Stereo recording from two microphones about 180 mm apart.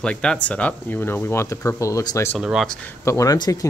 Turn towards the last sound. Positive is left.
turn(degrees=20)  # may be behind; listen again after turning